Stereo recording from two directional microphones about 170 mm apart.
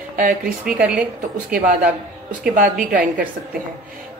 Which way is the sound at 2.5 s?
55° right (ahead or behind).